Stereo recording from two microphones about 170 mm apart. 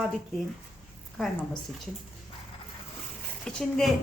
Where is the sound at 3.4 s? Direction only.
5° left (ahead or behind).